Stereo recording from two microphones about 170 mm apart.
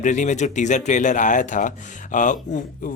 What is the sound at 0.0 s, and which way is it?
A man's voice, 45° left (ahead or behind).